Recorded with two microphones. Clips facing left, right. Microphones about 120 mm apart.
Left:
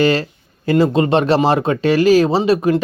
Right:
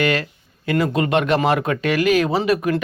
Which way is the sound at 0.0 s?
30° left (ahead or behind).